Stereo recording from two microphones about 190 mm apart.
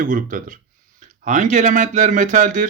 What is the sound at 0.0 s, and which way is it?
Speech, 45° right (ahead or behind).